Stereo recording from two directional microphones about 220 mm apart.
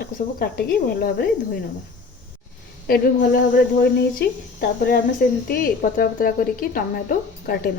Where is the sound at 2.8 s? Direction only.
40° left (ahead or behind).